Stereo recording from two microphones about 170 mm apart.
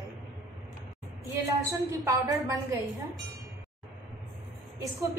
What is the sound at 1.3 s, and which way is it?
A woman's voice, 15° right (ahead or behind).